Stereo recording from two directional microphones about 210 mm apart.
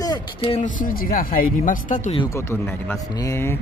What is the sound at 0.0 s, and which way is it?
Speech, 20° left (ahead or behind).